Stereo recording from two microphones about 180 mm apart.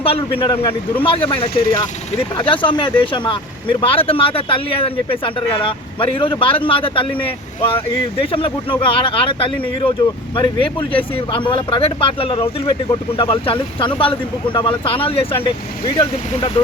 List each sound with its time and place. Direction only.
0.0 s speech: 30° left (ahead or behind)